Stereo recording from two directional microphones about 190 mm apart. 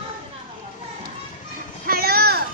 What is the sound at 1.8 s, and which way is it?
Children playing, 55° right (ahead or behind).